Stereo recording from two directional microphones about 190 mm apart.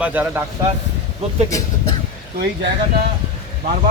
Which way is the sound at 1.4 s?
15° left (ahead or behind).